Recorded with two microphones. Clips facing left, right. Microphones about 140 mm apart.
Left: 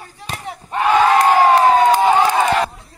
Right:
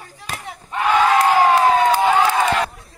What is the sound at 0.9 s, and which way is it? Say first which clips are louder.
Crowd: left 2 dB; 35° left (ahead or behind).